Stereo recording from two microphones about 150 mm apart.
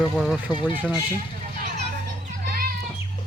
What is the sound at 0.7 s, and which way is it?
Speech, 10° right (ahead or behind).